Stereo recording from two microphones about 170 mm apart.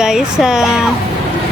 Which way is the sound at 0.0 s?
5° right (ahead or behind).